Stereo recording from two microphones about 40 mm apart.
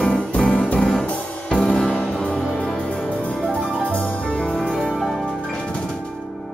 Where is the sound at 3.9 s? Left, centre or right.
Left.